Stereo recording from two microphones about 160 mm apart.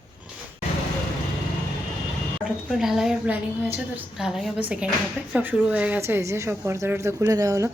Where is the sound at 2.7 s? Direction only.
Centre (ahead or behind).